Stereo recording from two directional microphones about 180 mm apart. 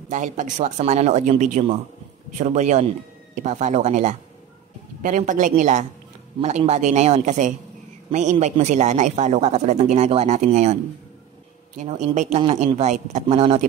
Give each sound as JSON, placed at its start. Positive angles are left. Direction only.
{"t": 0.1, "sound": "a woman's voice", "side_deg": -45}
{"t": 11.8, "sound": "speech", "side_deg": -35}